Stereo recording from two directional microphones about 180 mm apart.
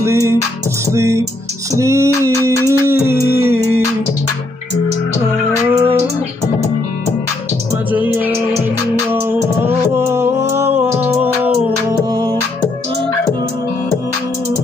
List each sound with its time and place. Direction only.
0.0 s music: 15° right (ahead or behind)
0.9 s a sound: 15° right (ahead or behind)
2.5 s music: 15° left (ahead or behind)
3.3 s music: 15° right (ahead or behind)
5.7 s a sound: 10° right (ahead or behind)
7.9 s music: 10° right (ahead or behind)
12.1 s music: 20° right (ahead or behind)